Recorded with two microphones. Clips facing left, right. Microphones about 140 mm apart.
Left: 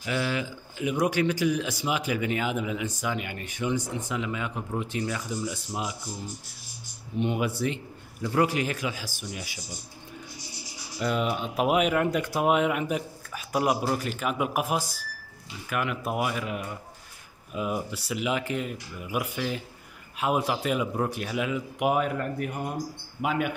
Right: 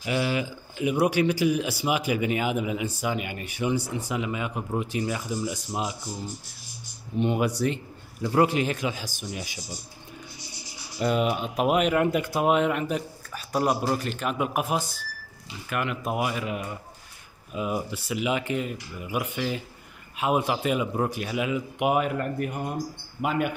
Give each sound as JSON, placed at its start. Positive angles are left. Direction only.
{"t": 0.0, "sound": "speech", "side_deg": -15}
{"t": 7.2, "sound": "a man's voice", "side_deg": -40}
{"t": 11.0, "sound": "speech", "side_deg": -20}
{"t": 11.2, "sound": "speech", "side_deg": -5}
{"t": 11.5, "sound": "a man's voice", "side_deg": 5}
{"t": 11.9, "sound": "a man's voice", "side_deg": -5}